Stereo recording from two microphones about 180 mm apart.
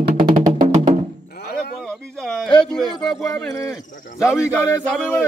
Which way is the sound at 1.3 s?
55° left (ahead or behind).